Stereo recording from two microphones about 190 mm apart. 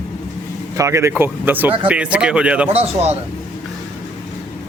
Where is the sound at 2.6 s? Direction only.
30° right (ahead or behind).